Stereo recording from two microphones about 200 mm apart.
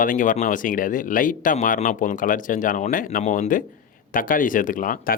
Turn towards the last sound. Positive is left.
turn(degrees=45)  # may be behind; listen again after turning